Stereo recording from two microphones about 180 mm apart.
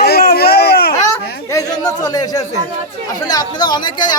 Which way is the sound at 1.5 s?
20° left (ahead or behind).